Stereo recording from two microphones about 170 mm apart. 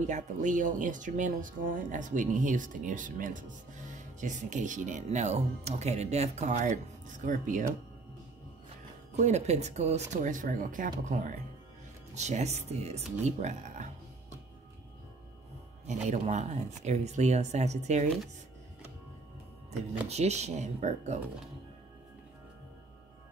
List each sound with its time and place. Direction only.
0.0 s speech: 45° right (ahead or behind)
9.2 s speech: 40° right (ahead or behind)
15.9 s speech: 45° right (ahead or behind)
19.7 s speech: 40° right (ahead or behind)